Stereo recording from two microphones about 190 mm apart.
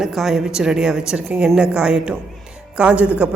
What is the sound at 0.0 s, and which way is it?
Speech, centre (ahead or behind).